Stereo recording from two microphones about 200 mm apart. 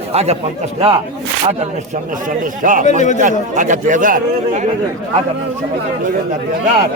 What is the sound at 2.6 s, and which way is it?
Speech, 40° right (ahead or behind).